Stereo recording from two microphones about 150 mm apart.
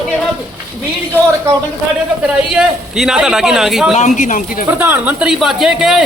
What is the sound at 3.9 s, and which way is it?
Speech, 55° left (ahead or behind).